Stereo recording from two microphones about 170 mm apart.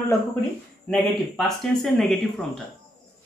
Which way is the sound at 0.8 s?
Centre (ahead or behind).